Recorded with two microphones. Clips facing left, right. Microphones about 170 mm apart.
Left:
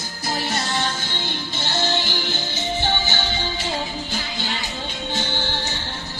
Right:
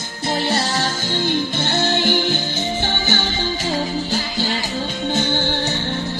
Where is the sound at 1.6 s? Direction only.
55° right (ahead or behind).